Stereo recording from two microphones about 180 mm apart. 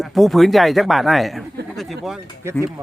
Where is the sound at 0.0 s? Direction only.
Centre (ahead or behind).